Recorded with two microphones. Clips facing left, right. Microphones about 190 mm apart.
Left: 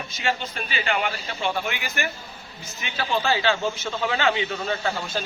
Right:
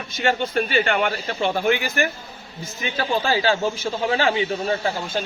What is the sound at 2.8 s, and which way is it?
A man's voice, 40° right (ahead or behind).